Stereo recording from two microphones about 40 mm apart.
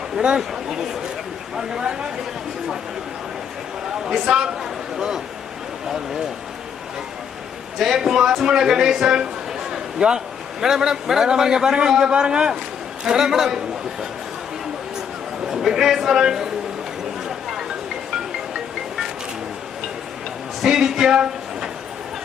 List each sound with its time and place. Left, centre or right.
0.3 s a man's voice: centre
4.0 s a man's voice: centre
7.8 s a man's voice: centre
9.7 s a sound: centre
10.6 s a man's voice: centre
15.4 s speech: centre
20.6 s a sound: centre